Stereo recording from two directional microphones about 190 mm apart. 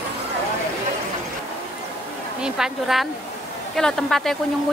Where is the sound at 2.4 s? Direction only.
Centre (ahead or behind).